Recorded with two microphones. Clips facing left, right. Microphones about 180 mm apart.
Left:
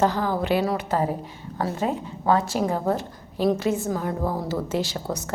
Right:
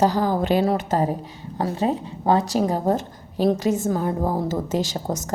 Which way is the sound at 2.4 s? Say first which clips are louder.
Right 3 dB; 40° right (ahead or behind).